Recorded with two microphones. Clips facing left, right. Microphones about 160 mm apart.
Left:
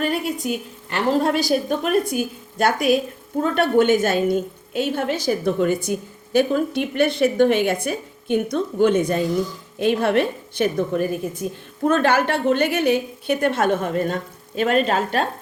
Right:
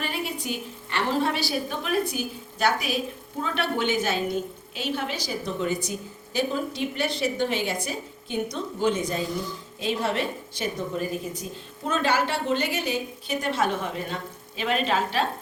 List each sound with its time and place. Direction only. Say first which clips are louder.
0.4 s a woman's voice: left 6 dB; 50° left (ahead or behind)